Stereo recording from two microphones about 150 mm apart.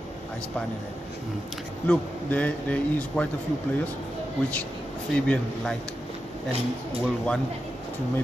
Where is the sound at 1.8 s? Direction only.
10° left (ahead or behind).